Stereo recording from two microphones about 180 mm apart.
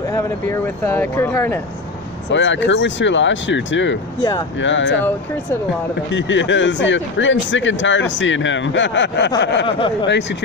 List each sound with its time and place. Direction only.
0.1 s speech: 15° left (ahead or behind)
2.3 s speech: 90° left
4.2 s speech: 20° left (ahead or behind)
4.6 s speech: 90° left
6.1 s speech: 90° left
9.4 s a sound: 80° left
9.7 s speech: 30° left (ahead or behind)